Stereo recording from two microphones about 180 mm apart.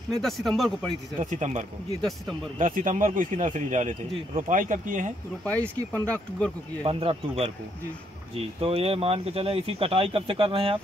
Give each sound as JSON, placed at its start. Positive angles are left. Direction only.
{"t": 0.2, "sound": "speech", "side_deg": 0}
{"t": 1.2, "sound": "speech", "side_deg": -40}
{"t": 2.0, "sound": "speech", "side_deg": 0}
{"t": 2.6, "sound": "speech", "side_deg": -45}
{"t": 5.4, "sound": "speech", "side_deg": 10}
{"t": 6.8, "sound": "speech", "side_deg": -30}